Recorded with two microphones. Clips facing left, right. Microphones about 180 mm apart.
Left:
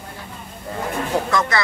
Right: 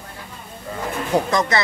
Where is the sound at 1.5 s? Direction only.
20° right (ahead or behind).